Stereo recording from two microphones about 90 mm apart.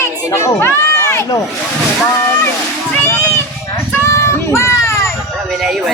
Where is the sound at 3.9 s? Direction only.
30° left (ahead or behind).